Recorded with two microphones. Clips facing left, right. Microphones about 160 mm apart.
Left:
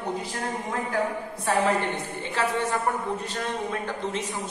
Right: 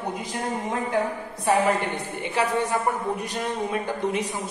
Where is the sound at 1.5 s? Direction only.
15° right (ahead or behind).